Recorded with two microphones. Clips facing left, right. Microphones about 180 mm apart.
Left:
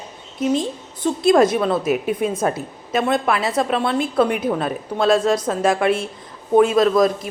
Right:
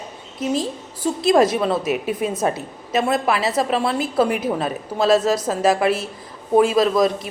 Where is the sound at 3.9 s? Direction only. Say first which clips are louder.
Left 1 dB; 5° right (ahead or behind).